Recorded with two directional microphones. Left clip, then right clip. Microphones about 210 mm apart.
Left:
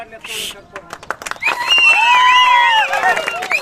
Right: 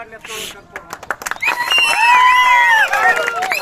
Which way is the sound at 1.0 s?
55° left (ahead or behind).